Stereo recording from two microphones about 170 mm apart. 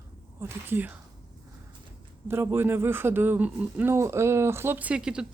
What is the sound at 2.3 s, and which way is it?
Speech, 15° right (ahead or behind).